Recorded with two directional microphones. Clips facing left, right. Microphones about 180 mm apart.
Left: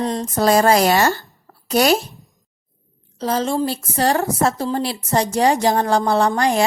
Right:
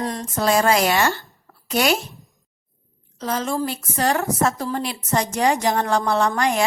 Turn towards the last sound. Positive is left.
turn(degrees=35)  # may be behind; listen again after turning